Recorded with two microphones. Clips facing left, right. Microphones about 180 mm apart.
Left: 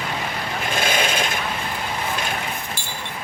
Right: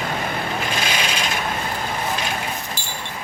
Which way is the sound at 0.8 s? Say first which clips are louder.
Left 2 dB; 50° left (ahead or behind).